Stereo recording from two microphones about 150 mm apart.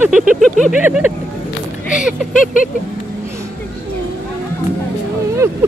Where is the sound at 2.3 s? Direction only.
60° left (ahead or behind).